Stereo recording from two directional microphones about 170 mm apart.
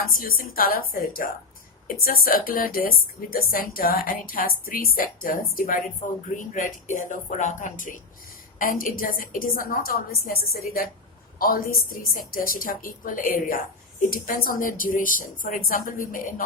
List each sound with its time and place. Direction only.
0.0 s a woman's voice: 55° left (ahead or behind)